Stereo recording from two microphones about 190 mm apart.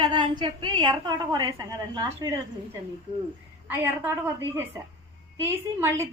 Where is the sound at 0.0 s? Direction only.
25° right (ahead or behind).